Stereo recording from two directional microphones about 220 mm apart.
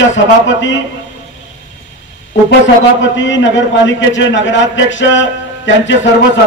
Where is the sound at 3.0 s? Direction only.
55° left (ahead or behind).